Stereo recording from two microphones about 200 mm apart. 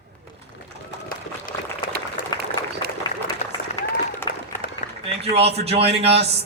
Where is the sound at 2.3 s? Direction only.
20° left (ahead or behind).